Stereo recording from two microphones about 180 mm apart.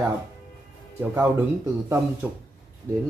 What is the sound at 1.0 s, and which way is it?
Speech, 15° right (ahead or behind).